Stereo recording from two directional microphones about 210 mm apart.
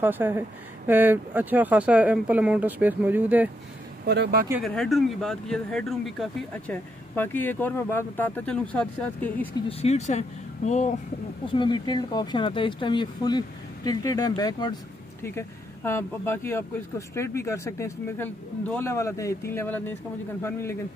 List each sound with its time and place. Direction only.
0.0 s speech: 10° right (ahead or behind)
4.0 s speech: 50° right (ahead or behind)
4.6 s speech: centre (ahead or behind)
9.7 s speech: 30° left (ahead or behind)
11.5 s speech: 20° left (ahead or behind)